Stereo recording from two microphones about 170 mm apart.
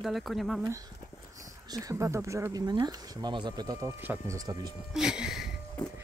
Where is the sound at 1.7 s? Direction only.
20° right (ahead or behind).